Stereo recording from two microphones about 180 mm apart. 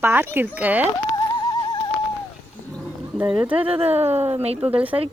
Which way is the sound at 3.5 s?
30° right (ahead or behind).